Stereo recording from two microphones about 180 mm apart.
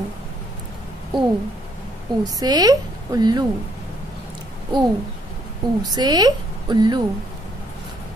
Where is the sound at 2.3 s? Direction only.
20° right (ahead or behind).